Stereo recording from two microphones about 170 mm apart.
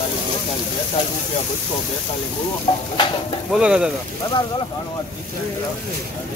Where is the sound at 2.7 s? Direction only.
35° left (ahead or behind).